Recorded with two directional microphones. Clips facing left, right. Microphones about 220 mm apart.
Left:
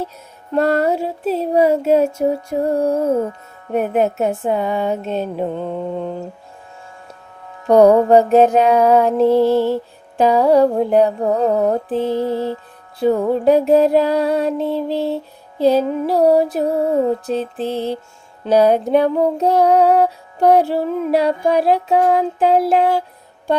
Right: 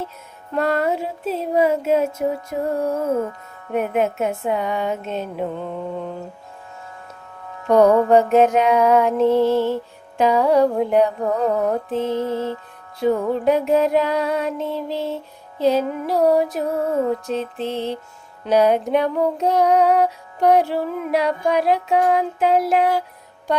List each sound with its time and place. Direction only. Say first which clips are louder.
0.5 s music: left 4 dB; 40° left (ahead or behind)
7.7 s music: left 3 dB; 35° left (ahead or behind)